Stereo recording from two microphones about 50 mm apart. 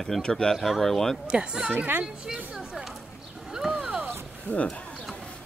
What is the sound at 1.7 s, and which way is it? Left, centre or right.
Speech, right.